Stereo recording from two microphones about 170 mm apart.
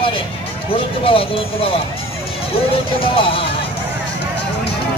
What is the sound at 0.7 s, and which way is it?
Speech, 30° left (ahead or behind).